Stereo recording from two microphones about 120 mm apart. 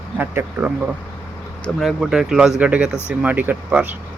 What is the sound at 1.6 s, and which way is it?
Speech, centre (ahead or behind).